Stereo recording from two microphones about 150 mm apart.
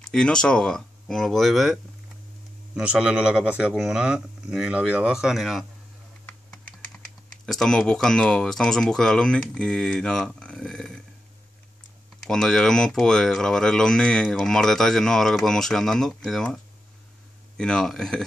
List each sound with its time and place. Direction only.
0.0 s speech: 5° left (ahead or behind)
7.4 s speech: 5° left (ahead or behind)
12.3 s speech: 5° left (ahead or behind)
17.6 s speech: 5° left (ahead or behind)